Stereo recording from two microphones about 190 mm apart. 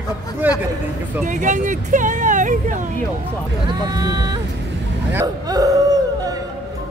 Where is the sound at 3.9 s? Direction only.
20° right (ahead or behind).